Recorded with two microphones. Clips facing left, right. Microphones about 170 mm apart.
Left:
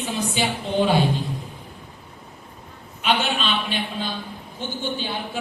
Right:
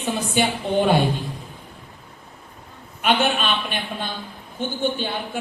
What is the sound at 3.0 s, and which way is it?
A man's voice, 55° right (ahead or behind).